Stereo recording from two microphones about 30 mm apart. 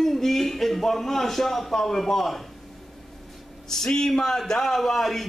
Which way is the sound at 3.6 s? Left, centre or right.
Centre.